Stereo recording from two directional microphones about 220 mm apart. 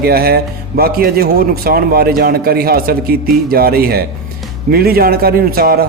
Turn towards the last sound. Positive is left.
turn(degrees=-45)  # may be behind; listen again after turning